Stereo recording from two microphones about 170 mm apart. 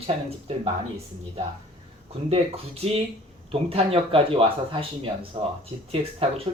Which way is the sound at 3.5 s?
35° right (ahead or behind).